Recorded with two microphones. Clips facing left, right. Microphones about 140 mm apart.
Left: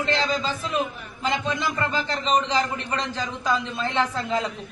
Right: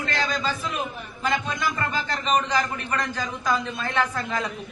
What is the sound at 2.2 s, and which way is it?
A man's voice, 30° left (ahead or behind).